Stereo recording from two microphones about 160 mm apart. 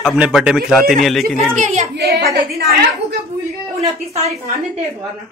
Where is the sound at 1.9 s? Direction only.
85° right.